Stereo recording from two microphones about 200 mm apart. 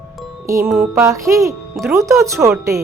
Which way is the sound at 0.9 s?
15° right (ahead or behind).